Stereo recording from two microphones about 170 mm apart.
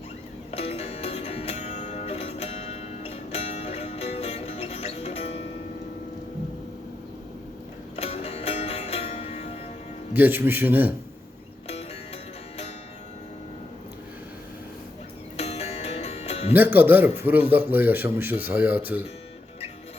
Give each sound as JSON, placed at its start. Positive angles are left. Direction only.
{"t": 0.5, "sound": "music", "side_deg": 35}
{"t": 7.9, "sound": "music", "side_deg": 35}
{"t": 10.2, "sound": "speech", "side_deg": -10}
{"t": 15.4, "sound": "music", "side_deg": 35}
{"t": 16.5, "sound": "speech", "side_deg": -10}